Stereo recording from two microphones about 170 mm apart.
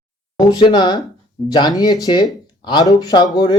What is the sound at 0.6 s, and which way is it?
Speech, 25° left (ahead or behind).